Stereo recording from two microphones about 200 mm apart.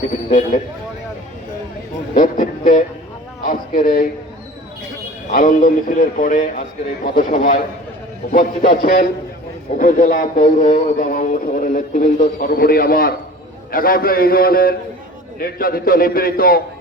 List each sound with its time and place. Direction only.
0.3 s speech: 40° left (ahead or behind)
2.1 s speech: 45° left (ahead or behind)
5.3 s speech: 45° left (ahead or behind)